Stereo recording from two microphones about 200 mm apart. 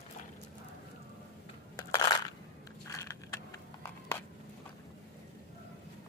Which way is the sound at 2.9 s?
15° left (ahead or behind).